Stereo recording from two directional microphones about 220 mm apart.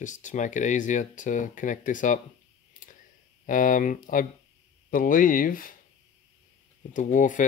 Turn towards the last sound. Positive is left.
turn(degrees=35)  # may be behind; listen again after turning